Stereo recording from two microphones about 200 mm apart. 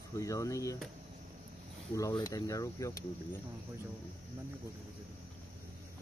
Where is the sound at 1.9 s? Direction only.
15° left (ahead or behind).